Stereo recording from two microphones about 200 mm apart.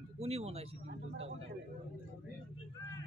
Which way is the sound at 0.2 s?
30° right (ahead or behind).